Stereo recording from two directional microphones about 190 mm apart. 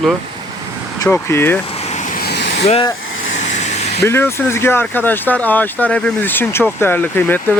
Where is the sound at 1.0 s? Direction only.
15° left (ahead or behind).